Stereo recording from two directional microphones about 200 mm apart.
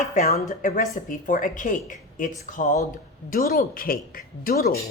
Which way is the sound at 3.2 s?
45° left (ahead or behind).